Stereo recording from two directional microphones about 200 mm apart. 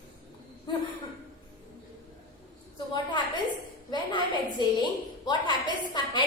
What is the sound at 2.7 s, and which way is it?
Speech, 20° left (ahead or behind).